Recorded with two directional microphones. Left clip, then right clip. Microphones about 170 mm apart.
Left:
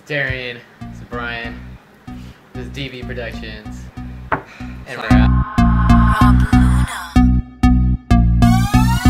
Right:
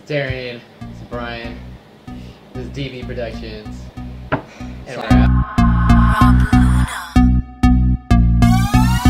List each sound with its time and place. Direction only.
0.1 s speech: 20° left (ahead or behind)
2.5 s speech: 20° left (ahead or behind)
5.0 s music: centre (ahead or behind)